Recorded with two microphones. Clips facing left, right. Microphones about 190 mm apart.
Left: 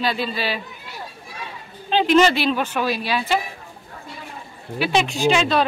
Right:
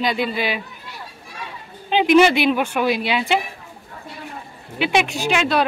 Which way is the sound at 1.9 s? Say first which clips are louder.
Right 2 dB; 10° right (ahead or behind).